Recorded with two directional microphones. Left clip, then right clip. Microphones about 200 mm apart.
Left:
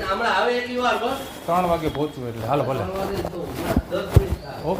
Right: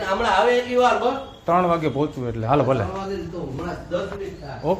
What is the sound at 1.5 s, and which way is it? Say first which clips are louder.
A man's voice: right 2 dB; 35° right (ahead or behind).